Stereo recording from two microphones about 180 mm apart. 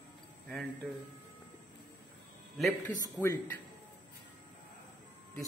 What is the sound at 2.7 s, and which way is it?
Speech, 15° left (ahead or behind).